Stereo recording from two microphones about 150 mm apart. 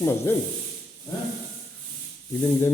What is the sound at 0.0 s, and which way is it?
Speech, 15° left (ahead or behind).